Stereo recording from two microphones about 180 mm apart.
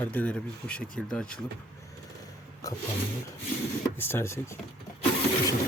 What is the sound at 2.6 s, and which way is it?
Speech, 20° left (ahead or behind).